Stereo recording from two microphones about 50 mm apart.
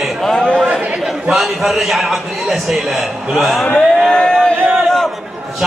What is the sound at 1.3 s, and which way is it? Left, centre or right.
A man's voice, centre.